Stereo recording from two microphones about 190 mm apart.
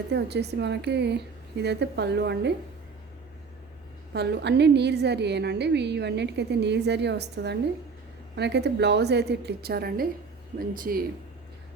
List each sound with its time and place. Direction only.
0.1 s a woman's voice: 60° right (ahead or behind)
4.1 s a woman's voice: 60° right (ahead or behind)